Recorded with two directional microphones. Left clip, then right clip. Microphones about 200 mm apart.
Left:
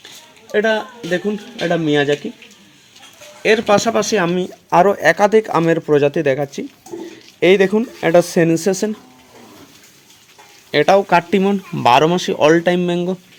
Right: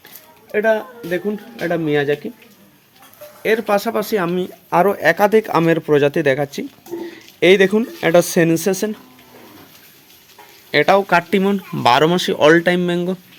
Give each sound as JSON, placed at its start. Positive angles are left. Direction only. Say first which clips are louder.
{"t": 0.5, "sound": "a man's voice", "louder": "even", "side_deg": 35}
{"t": 3.4, "sound": "speech", "louder": "left 3 dB", "side_deg": 30}
{"t": 10.7, "sound": "speech", "louder": "left 1 dB", "side_deg": 10}